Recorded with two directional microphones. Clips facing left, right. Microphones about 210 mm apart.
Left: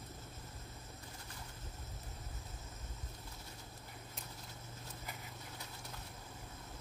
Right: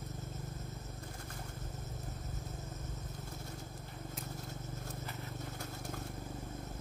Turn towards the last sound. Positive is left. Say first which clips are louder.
# right 8 dB
turn(degrees=-50)  # may be behind; listen again after turning